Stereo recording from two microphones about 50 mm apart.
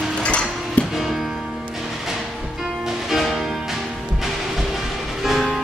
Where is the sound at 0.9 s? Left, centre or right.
Centre.